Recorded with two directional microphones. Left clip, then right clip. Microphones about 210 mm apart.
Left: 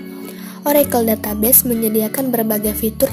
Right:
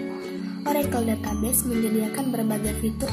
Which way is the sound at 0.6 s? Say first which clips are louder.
Left 10 dB; 45° left (ahead or behind).